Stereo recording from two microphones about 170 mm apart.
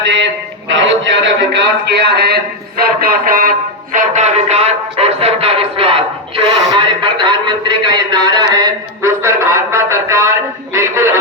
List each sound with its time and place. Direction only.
0.7 s a man's voice: 90° right; by 3.5 s 55° right (ahead or behind)
3.9 s music: 45° right (ahead or behind)
7.9 s a sound: 25° right (ahead or behind)